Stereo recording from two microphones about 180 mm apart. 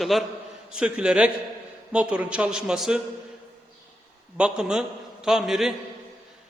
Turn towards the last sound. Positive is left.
turn(degrees=0)  # may be behind; listen again after turning